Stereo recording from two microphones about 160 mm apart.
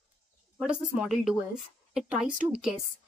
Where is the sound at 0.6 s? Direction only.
5° right (ahead or behind).